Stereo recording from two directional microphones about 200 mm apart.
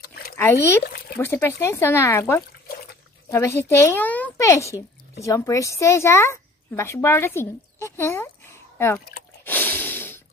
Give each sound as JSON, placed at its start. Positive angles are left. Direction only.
{"t": 0.4, "sound": "a woman's voice", "side_deg": 15}
{"t": 2.7, "sound": "water", "side_deg": 50}
{"t": 3.3, "sound": "a woman's voice", "side_deg": 15}
{"t": 9.4, "sound": "snort", "side_deg": 10}